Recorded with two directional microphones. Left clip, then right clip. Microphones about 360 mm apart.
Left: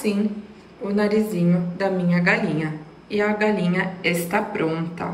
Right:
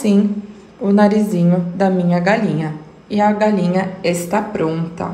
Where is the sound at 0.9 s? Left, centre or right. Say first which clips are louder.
Right 7 dB; centre.